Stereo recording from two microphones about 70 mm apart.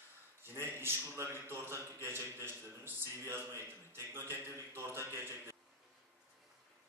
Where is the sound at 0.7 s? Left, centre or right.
Right.